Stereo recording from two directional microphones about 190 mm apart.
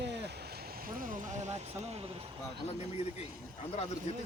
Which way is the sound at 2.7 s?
35° left (ahead or behind).